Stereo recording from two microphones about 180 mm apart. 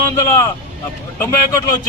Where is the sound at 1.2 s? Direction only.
15° left (ahead or behind).